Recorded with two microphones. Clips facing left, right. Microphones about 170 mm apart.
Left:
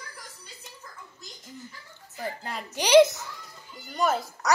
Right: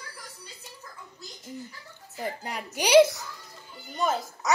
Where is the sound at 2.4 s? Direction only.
10° right (ahead or behind).